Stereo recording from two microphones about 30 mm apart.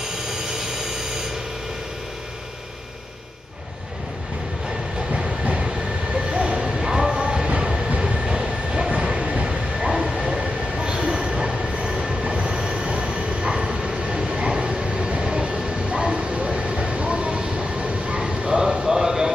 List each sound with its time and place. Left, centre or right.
6.3 s a sound: right
8.2 s vehicle: right
8.9 s vehicle: right
9.2 s train: right
17.4 s vehicle: right
18.5 s a sound: centre